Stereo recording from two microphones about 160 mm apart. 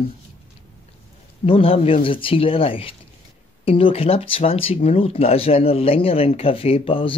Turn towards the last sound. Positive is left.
turn(degrees=35)  # may be behind; listen again after turning